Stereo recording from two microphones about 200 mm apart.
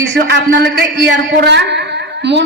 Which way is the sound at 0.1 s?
60° right (ahead or behind).